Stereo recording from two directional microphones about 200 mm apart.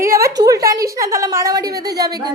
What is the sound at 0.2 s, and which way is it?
A woman's voice, 15° right (ahead or behind).